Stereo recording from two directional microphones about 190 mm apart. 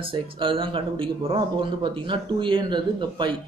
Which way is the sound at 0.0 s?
30° right (ahead or behind).